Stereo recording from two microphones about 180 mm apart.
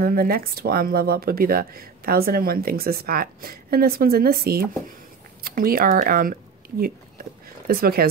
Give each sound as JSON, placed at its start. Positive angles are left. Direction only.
{"t": 0.0, "sound": "speech", "side_deg": -55}
{"t": 7.6, "sound": "speech", "side_deg": -55}